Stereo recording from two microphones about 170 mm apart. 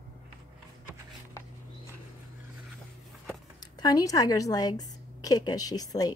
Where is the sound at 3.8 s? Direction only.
20° left (ahead or behind).